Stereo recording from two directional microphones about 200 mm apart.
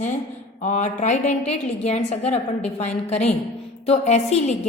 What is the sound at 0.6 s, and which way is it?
A woman's voice, 35° left (ahead or behind).